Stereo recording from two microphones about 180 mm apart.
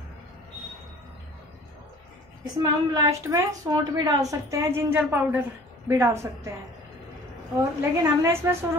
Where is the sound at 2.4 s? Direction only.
20° right (ahead or behind).